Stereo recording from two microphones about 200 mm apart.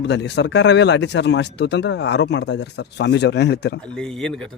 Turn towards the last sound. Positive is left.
turn(degrees=0)  # may be behind; listen again after turning